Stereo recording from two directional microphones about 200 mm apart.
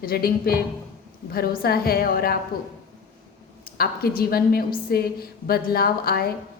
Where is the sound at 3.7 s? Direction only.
50° left (ahead or behind).